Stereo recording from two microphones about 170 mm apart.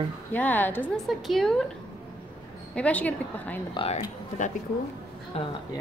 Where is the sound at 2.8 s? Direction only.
10° left (ahead or behind).